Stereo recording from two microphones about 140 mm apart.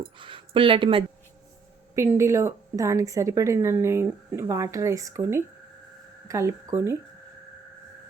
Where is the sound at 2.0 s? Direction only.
20° right (ahead or behind).